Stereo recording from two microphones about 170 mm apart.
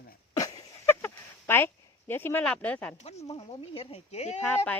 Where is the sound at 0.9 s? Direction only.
15° left (ahead or behind).